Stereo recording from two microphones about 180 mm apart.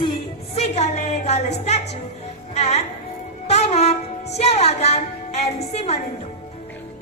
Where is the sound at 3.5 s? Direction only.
40° left (ahead or behind).